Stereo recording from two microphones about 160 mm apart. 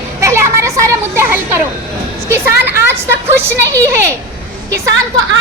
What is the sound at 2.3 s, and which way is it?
Music, 15° right (ahead or behind).